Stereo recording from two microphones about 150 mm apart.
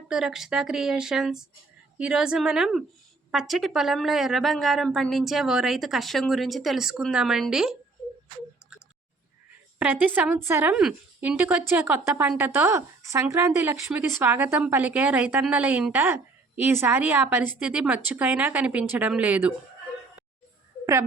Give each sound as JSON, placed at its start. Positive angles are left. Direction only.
{"t": 0.1, "sound": "a woman's voice", "side_deg": -5}
{"t": 9.7, "sound": "speech", "side_deg": -10}